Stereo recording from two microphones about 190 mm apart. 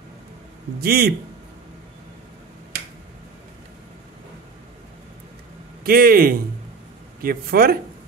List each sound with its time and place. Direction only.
0.7 s a man's voice: 55° right (ahead or behind)
5.9 s speech: 50° right (ahead or behind)